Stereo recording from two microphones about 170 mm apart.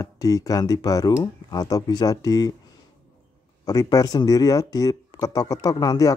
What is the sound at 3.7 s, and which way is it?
Speech, 20° left (ahead or behind).